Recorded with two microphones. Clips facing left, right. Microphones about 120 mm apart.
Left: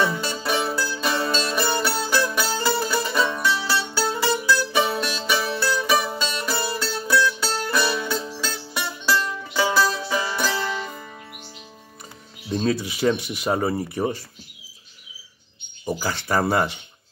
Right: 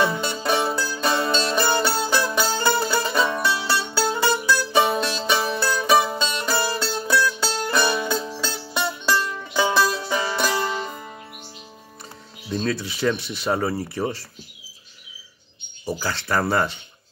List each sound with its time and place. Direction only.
0.1 s music: 20° right (ahead or behind)
12.5 s speech: 20° left (ahead or behind)
15.8 s speech: 20° left (ahead or behind)